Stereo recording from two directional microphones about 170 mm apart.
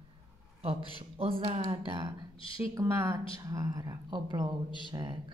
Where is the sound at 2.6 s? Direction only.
15° right (ahead or behind).